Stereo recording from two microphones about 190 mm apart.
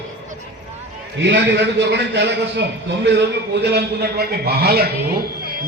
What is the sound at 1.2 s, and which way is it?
A man's voice, 70° right (ahead or behind).